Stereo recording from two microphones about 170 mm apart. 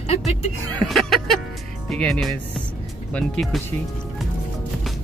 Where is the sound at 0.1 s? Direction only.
40° left (ahead or behind).